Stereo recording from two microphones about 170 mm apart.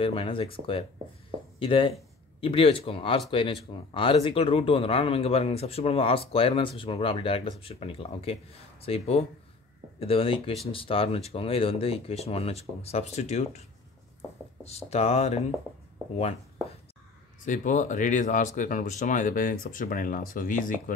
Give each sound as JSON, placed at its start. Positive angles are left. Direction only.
{"t": 0.0, "sound": "speech", "side_deg": 30}
{"t": 14.6, "sound": "speech", "side_deg": 40}
{"t": 17.5, "sound": "speech", "side_deg": 45}